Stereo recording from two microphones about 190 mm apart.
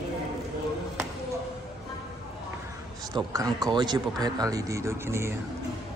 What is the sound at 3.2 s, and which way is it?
A man's voice, 20° right (ahead or behind).